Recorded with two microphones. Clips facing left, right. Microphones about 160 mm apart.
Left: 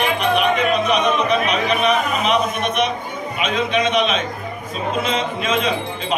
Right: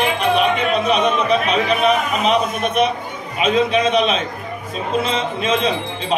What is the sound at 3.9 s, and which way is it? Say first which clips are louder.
Speech: right 2 dB; 35° right (ahead or behind).